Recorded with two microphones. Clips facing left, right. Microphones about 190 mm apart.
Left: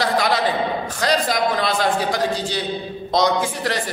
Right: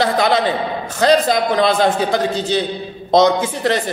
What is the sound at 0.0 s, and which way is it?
A man's voice, 25° right (ahead or behind).